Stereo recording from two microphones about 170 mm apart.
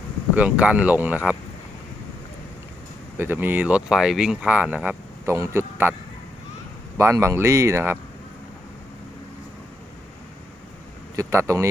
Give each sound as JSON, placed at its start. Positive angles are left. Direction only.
{"t": 0.3, "sound": "speech", "side_deg": -5}
{"t": 3.2, "sound": "speech", "side_deg": -10}
{"t": 6.9, "sound": "speech", "side_deg": -15}
{"t": 11.2, "sound": "speech", "side_deg": -15}